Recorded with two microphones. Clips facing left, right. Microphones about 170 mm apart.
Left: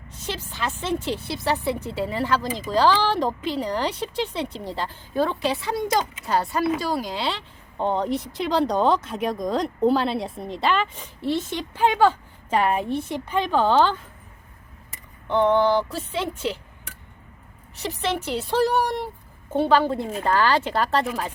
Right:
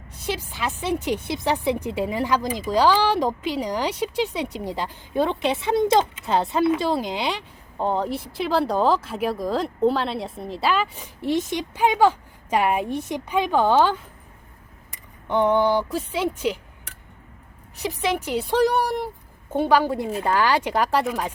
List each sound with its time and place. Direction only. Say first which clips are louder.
0.1 s a woman's voice: right 4 dB; 10° right (ahead or behind)
7.8 s speech: left 1 dB; 5° right (ahead or behind)
15.3 s a woman's voice: even; 10° right (ahead or behind)
17.7 s a woman's voice: right 2 dB; 10° right (ahead or behind)